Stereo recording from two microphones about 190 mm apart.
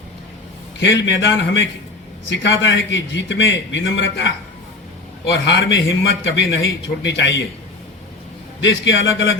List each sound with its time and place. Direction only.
0.8 s a man's voice: 70° left (ahead or behind)
5.3 s a man's voice: 75° left (ahead or behind)
8.6 s a man's voice: 75° left (ahead or behind)